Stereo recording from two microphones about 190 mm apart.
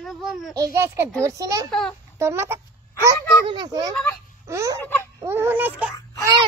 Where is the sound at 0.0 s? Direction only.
Centre (ahead or behind).